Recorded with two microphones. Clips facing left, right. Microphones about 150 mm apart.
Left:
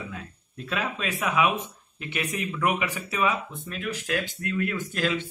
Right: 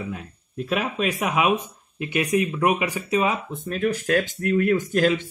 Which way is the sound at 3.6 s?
45° right (ahead or behind).